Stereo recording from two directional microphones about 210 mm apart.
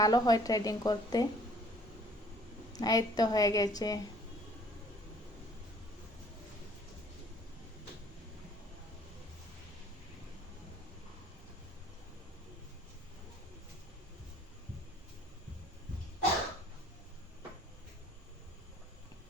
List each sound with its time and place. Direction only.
0.0 s speech: 20° left (ahead or behind)
2.7 s speech: 20° left (ahead or behind)